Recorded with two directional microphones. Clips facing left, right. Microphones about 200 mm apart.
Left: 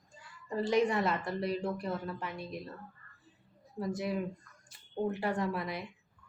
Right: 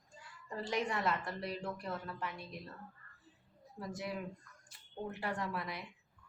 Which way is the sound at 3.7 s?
25° left (ahead or behind).